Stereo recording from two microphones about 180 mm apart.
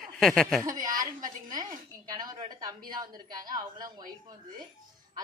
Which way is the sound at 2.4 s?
20° right (ahead or behind).